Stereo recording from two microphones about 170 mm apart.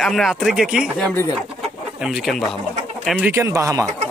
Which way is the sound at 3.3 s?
15° right (ahead or behind).